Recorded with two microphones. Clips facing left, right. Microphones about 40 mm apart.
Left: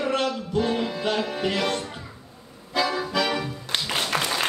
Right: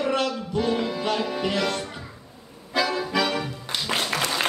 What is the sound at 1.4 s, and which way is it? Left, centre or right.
Music, left.